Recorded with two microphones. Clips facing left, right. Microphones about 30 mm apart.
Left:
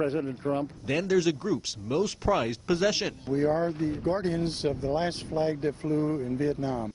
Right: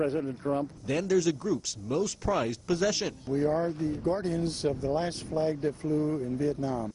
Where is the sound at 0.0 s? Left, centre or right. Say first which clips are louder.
Left 1 dB; centre.